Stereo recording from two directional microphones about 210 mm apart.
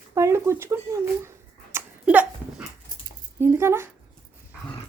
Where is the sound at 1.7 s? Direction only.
5° right (ahead or behind).